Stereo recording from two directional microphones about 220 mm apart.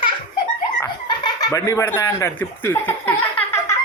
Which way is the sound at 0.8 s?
20° left (ahead or behind).